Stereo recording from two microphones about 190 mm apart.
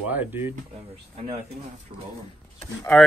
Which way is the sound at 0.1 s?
10° right (ahead or behind).